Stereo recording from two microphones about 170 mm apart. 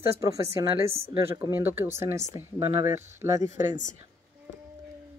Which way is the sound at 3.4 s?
45° left (ahead or behind).